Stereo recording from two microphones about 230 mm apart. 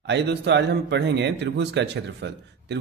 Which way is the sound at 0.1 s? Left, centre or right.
Right.